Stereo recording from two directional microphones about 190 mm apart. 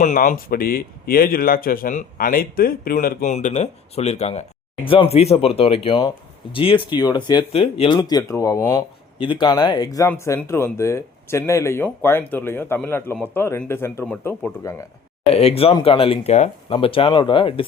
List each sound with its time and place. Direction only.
0.0 s speech: 40° left (ahead or behind); by 14.8 s 15° left (ahead or behind)
15.3 s speech: 30° left (ahead or behind)